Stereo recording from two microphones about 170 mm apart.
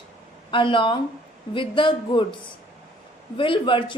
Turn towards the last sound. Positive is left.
turn(degrees=30)  # may be behind; listen again after turning